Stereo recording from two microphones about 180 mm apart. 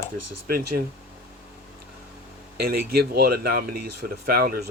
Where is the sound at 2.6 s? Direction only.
60° right (ahead or behind).